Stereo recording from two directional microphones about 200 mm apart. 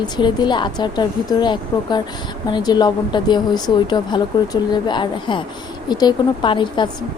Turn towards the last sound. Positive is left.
turn(degrees=25)  # may be behind; listen again after turning